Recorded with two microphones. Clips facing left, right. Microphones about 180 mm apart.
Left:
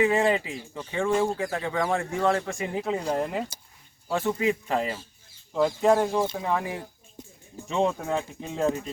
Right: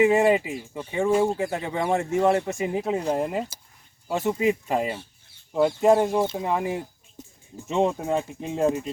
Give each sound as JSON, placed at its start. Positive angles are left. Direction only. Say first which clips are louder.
{"t": 0.0, "sound": "speech", "louder": "right 4 dB", "side_deg": -15}